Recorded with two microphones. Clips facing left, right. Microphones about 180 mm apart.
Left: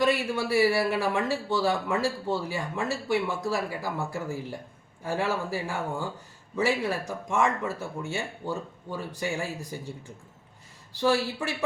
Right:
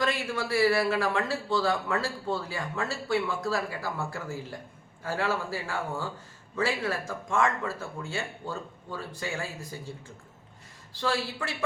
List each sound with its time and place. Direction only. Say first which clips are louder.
0.0 s a man's voice: left 4 dB; 15° left (ahead or behind)
11.0 s a man's voice: left 5 dB; 15° left (ahead or behind)